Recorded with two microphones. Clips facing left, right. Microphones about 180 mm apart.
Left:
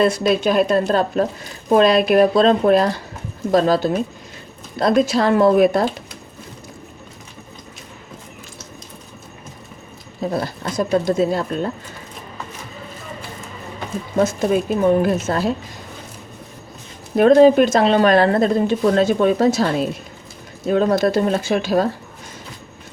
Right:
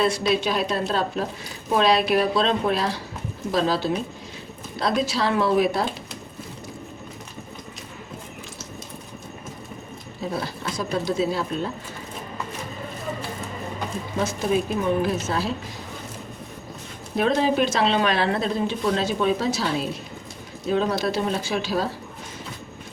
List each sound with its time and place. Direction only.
0.0 s speech: 50° left (ahead or behind)
10.3 s speech: 45° left (ahead or behind)
14.2 s speech: 50° left (ahead or behind)
17.2 s speech: 50° left (ahead or behind)